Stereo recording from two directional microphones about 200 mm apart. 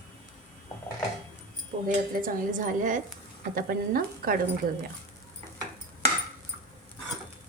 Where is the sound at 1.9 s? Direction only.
40° right (ahead or behind).